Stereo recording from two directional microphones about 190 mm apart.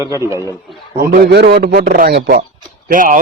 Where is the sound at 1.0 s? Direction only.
60° right (ahead or behind).